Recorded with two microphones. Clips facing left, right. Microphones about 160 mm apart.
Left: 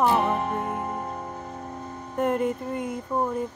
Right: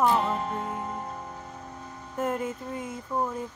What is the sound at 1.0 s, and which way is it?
Music, 30° left (ahead or behind).